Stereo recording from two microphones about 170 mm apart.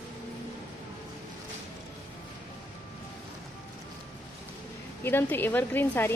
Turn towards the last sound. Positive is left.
turn(degrees=10)  # may be behind; listen again after turning